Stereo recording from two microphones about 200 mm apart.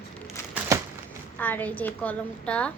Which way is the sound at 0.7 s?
15° right (ahead or behind).